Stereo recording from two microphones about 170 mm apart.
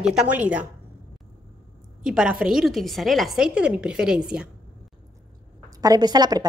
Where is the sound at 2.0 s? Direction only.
5° right (ahead or behind).